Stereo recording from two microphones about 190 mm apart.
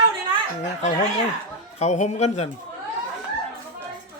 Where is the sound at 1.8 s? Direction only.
35° left (ahead or behind).